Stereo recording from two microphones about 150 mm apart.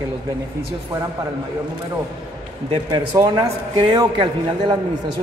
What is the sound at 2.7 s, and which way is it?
A man's voice, 30° right (ahead or behind).